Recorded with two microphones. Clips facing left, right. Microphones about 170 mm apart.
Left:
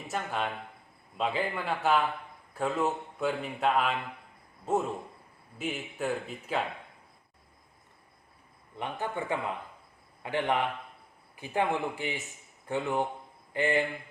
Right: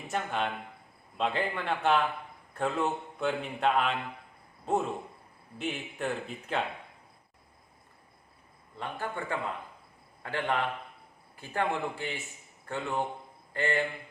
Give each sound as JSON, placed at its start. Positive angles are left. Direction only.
{"t": 0.1, "sound": "speech", "side_deg": 0}
{"t": 8.7, "sound": "a man's voice", "side_deg": 20}